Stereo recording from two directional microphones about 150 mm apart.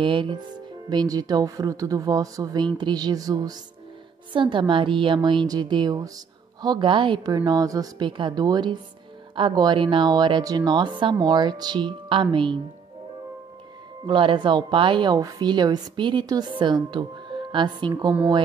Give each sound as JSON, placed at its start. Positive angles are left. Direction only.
{"t": 0.0, "sound": "a woman's voice", "side_deg": -35}
{"t": 14.0, "sound": "a woman's voice", "side_deg": -35}